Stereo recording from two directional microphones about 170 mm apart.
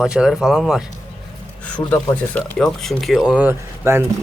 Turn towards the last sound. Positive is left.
turn(degrees=-15)  # may be behind; listen again after turning